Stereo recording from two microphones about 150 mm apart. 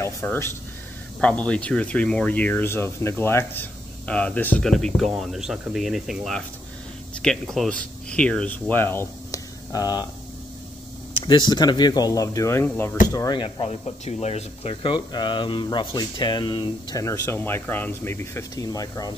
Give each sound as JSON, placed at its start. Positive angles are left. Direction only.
{"t": 0.0, "sound": "speech", "side_deg": 15}
{"t": 11.1, "sound": "speech", "side_deg": 30}
{"t": 13.7, "sound": "speech", "side_deg": 45}
{"t": 17.0, "sound": "speech", "side_deg": 20}